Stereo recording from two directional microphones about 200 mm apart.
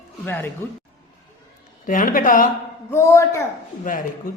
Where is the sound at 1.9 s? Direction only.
40° left (ahead or behind).